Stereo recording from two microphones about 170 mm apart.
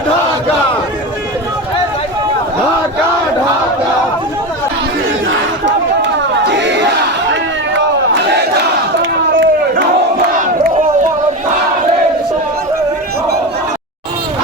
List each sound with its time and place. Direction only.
5.6 s crowd: 90° right
7.7 s battle cry: 90° right
9.0 s a sound: 90° right